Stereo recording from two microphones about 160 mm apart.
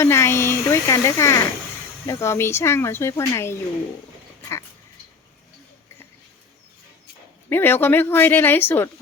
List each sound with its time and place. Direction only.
0.0 s speech: 15° left (ahead or behind)
4.4 s dog: 15° left (ahead or behind)
7.5 s speech: 15° left (ahead or behind)